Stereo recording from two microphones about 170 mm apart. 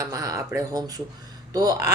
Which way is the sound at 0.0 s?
20° right (ahead or behind).